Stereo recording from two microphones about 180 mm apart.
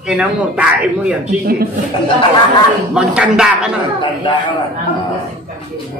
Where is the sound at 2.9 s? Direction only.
5° right (ahead or behind).